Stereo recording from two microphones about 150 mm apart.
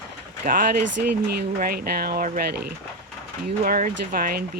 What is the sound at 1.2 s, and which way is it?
Speech, 85° right.